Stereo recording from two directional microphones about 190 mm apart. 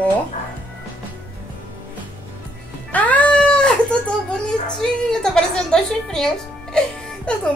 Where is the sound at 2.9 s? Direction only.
10° left (ahead or behind).